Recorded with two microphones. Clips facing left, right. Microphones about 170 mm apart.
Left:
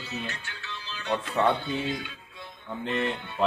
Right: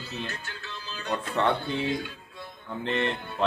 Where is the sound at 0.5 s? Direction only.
45° right (ahead or behind).